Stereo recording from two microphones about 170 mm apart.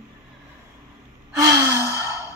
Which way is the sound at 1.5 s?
15° right (ahead or behind).